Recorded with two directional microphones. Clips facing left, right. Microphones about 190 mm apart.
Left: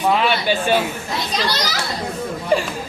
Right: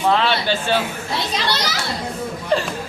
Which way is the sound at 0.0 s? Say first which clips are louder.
Even; 10° left (ahead or behind).